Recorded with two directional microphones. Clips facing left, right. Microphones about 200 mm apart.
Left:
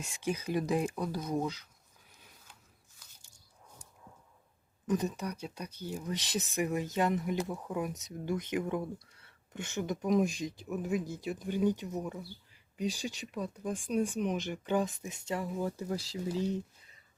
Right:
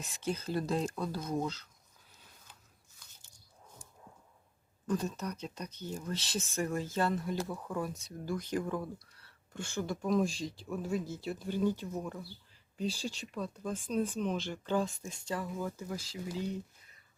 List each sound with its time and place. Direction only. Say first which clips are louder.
0.0 s speech: left 1 dB; 10° left (ahead or behind)
4.9 s speech: left 2 dB; 15° left (ahead or behind); by 16.6 s 35° left (ahead or behind)